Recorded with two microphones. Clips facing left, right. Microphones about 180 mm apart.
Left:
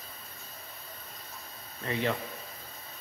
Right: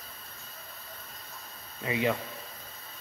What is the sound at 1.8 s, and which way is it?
Speech, 10° right (ahead or behind).